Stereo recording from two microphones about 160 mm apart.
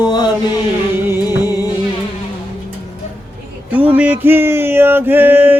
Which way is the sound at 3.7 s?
10° right (ahead or behind).